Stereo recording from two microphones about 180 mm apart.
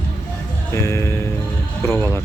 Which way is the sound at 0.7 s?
15° left (ahead or behind).